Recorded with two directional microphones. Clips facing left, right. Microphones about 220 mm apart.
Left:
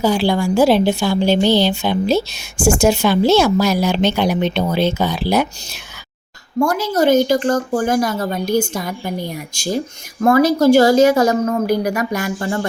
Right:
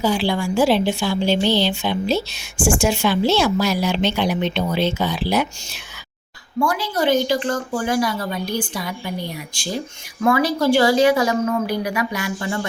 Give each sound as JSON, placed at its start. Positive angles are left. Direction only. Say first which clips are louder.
{"t": 0.0, "sound": "speech", "louder": "left 4 dB", "side_deg": 40}
{"t": 6.6, "sound": "speech", "louder": "left 5 dB", "side_deg": 45}